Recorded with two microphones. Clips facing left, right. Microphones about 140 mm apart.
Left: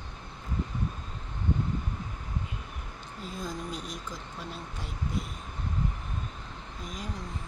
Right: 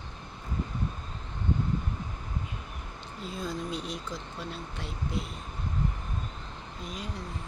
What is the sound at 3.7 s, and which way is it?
Speech, 45° left (ahead or behind).